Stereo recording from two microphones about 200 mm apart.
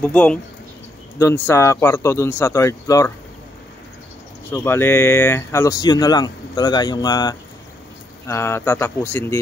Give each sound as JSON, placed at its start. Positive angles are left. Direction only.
{"t": 0.0, "sound": "speech", "side_deg": 5}
{"t": 4.5, "sound": "speech", "side_deg": 10}